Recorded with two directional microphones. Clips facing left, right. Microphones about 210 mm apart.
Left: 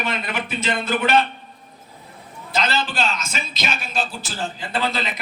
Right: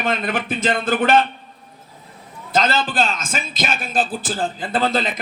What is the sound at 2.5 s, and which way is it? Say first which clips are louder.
Speech: right 4 dB; 50° right (ahead or behind).